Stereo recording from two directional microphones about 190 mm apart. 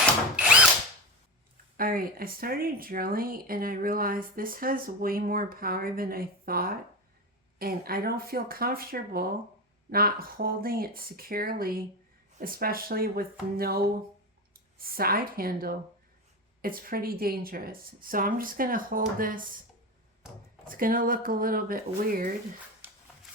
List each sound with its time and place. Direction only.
1.7 s speech: 50° right (ahead or behind)
20.7 s speech: 45° right (ahead or behind)